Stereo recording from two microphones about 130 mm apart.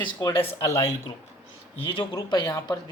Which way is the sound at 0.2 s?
25° left (ahead or behind).